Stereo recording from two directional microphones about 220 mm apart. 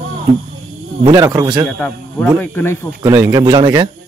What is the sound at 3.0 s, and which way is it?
Speech, 15° right (ahead or behind).